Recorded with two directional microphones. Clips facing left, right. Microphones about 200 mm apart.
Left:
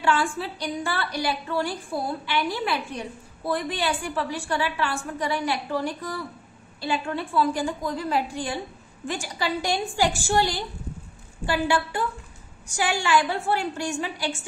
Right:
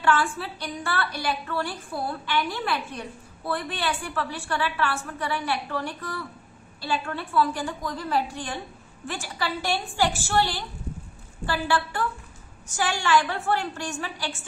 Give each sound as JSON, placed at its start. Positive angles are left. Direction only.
{"t": 0.0, "sound": "a woman's voice", "side_deg": 15}